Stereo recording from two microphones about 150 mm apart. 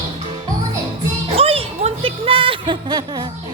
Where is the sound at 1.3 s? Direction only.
40° right (ahead or behind).